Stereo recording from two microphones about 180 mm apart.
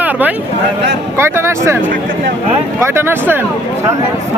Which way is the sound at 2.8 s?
15° right (ahead or behind).